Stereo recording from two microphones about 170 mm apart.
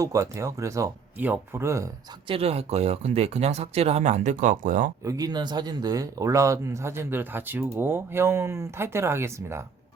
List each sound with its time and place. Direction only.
0.0 s speech: 20° right (ahead or behind)
2.2 s speech: 35° right (ahead or behind); by 4.9 s 50° right (ahead or behind)
5.0 s speech: 20° right (ahead or behind)